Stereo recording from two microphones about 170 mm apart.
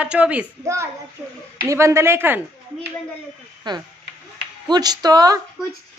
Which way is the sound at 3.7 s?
25° right (ahead or behind).